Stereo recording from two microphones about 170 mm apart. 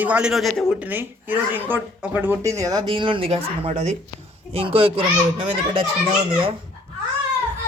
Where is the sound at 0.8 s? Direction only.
10° right (ahead or behind); by 5.8 s 30° right (ahead or behind).